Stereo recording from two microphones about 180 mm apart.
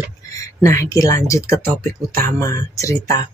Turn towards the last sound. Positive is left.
turn(degrees=20)  # may be behind; listen again after turning